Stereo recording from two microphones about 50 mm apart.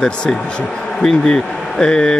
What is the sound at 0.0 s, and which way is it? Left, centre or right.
Speech, centre.